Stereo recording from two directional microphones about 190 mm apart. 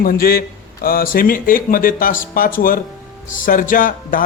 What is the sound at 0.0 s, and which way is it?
Speech, 50° left (ahead or behind).